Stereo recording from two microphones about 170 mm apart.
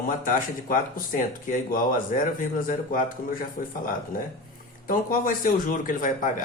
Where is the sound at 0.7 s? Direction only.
50° left (ahead or behind).